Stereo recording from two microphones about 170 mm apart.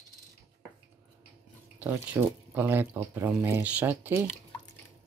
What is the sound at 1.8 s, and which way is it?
Speech, 10° right (ahead or behind).